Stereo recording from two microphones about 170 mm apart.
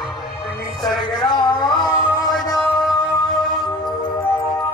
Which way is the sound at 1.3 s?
25° left (ahead or behind).